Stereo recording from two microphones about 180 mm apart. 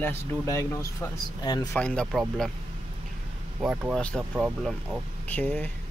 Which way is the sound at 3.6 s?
5° right (ahead or behind).